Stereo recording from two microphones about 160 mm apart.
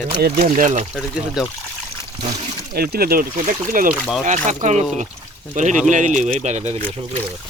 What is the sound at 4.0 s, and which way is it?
Speech, centre (ahead or behind).